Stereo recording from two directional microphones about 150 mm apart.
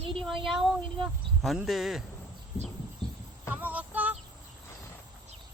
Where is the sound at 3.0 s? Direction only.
5° left (ahead or behind).